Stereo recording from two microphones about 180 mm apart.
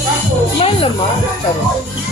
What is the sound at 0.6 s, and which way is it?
Music, 30° left (ahead or behind).